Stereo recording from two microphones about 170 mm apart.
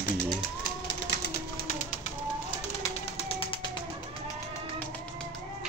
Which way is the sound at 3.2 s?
35° left (ahead or behind).